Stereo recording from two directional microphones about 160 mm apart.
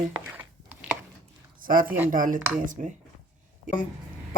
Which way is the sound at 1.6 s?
60° right (ahead or behind).